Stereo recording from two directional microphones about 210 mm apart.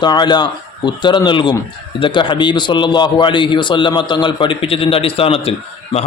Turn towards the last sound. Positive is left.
turn(degrees=30)  # may be behind; listen again after turning